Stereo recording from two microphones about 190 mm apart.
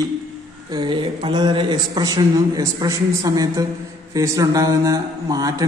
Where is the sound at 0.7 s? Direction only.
25° right (ahead or behind).